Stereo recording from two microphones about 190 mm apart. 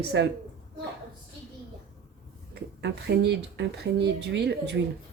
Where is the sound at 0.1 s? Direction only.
70° right (ahead or behind).